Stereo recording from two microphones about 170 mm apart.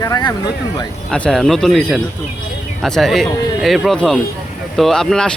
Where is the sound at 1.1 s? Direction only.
5° left (ahead or behind).